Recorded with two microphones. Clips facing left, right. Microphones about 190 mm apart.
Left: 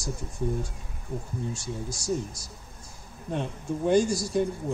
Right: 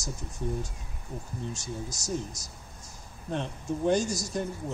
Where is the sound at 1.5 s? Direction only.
10° left (ahead or behind).